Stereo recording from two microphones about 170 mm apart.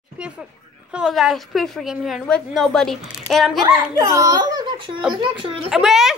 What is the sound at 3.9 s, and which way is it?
A child's voice, 20° right (ahead or behind).